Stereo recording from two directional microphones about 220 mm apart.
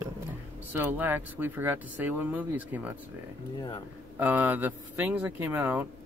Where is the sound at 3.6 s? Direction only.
20° left (ahead or behind).